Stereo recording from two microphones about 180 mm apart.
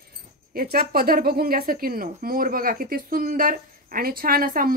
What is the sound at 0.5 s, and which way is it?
Speech, 55° right (ahead or behind).